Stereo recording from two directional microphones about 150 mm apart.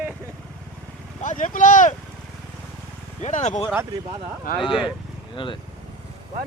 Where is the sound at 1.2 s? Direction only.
60° left (ahead or behind).